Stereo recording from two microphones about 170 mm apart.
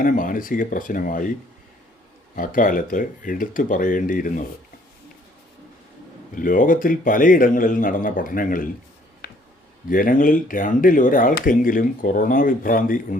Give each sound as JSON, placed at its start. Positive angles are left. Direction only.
{"t": 0.0, "sound": "speech", "side_deg": 50}
{"t": 2.3, "sound": "speech", "side_deg": 55}
{"t": 6.3, "sound": "speech", "side_deg": 50}
{"t": 9.9, "sound": "speech", "side_deg": 55}